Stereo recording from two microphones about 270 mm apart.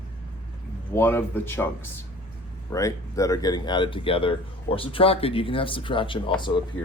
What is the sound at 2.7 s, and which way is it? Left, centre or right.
Speech, centre.